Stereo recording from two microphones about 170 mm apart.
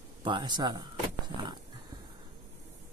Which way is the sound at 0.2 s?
25° right (ahead or behind).